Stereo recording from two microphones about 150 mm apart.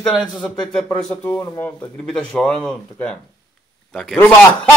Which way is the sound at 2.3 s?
10° left (ahead or behind).